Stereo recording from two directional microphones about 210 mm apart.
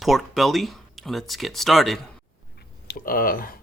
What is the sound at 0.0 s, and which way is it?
Speech, centre (ahead or behind).